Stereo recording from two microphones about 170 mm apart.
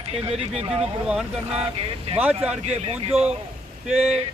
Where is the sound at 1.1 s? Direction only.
5° right (ahead or behind).